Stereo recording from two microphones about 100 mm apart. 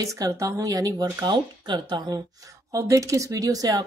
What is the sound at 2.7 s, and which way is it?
A woman's voice, 35° right (ahead or behind).